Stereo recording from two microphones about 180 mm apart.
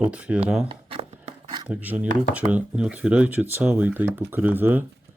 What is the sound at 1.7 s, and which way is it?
Speech, 10° right (ahead or behind).